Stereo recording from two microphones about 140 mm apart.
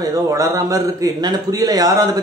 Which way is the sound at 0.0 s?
25° right (ahead or behind).